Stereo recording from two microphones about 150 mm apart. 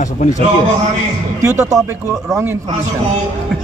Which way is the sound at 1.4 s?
20° right (ahead or behind).